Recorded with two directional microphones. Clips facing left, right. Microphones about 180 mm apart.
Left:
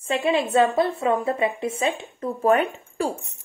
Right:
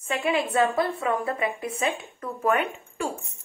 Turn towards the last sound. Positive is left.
turn(degrees=35)  # may be behind; listen again after turning